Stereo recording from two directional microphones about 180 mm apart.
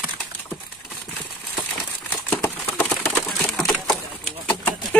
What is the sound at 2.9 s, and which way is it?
Bird, 10° left (ahead or behind).